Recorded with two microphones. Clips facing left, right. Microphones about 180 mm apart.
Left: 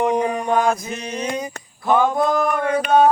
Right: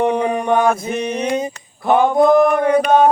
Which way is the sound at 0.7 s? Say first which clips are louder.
Right 5 dB; 60° right (ahead or behind).